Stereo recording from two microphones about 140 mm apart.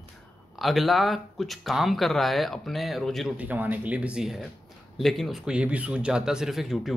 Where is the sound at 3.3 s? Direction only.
10° right (ahead or behind).